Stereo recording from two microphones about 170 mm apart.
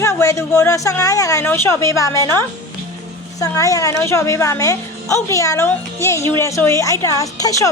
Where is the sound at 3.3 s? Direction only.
20° left (ahead or behind).